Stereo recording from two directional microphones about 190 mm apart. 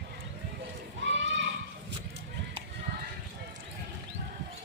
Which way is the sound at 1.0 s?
70° right (ahead or behind).